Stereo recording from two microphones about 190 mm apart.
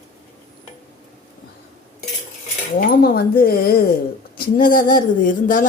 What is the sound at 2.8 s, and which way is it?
A woman's voice, 50° left (ahead or behind).